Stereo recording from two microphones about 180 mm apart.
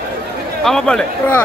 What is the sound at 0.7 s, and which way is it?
Speech, 5° left (ahead or behind).